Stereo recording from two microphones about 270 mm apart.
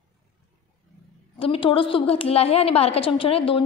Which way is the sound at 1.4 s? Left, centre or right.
Centre.